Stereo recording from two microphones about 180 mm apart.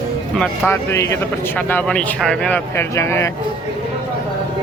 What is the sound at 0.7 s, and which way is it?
Speech, 15° left (ahead or behind).